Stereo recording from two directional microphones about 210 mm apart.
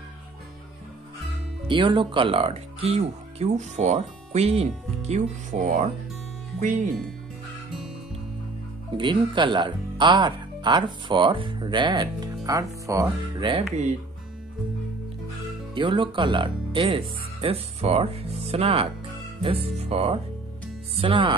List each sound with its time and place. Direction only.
1.7 s speech: 25° right (ahead or behind)
8.9 s speech: 20° right (ahead or behind)
15.7 s speech: 25° right (ahead or behind)